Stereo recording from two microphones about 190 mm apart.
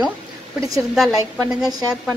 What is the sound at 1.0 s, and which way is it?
A woman's voice, centre (ahead or behind).